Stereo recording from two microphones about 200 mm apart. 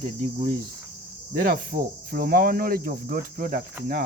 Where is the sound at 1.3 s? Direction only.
45° right (ahead or behind).